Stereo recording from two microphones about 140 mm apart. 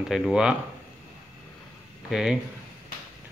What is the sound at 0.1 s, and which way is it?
Speech, 5° right (ahead or behind).